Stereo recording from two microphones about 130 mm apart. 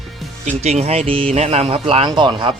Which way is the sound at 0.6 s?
60° right (ahead or behind).